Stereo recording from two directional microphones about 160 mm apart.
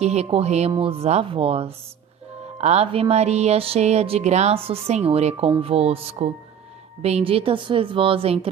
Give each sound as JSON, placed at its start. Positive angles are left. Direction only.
{"t": 0.0, "sound": "speech", "side_deg": -40}